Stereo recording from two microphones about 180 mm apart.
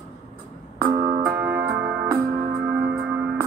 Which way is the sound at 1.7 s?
5° right (ahead or behind).